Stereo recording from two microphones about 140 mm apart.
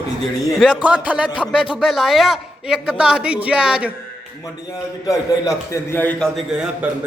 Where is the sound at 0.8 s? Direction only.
10° right (ahead or behind).